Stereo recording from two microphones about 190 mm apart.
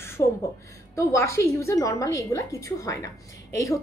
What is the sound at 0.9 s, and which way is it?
A woman's voice, 15° left (ahead or behind).